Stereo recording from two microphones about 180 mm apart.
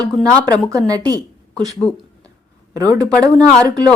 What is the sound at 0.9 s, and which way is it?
Speech, 20° right (ahead or behind).